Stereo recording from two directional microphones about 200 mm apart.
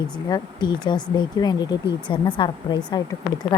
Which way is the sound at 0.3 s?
20° left (ahead or behind).